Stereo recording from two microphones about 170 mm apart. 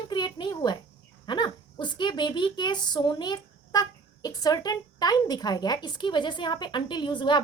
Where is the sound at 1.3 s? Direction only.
25° left (ahead or behind).